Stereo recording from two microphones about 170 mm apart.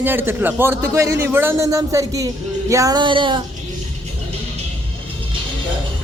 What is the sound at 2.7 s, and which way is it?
Female singing, 20° right (ahead or behind).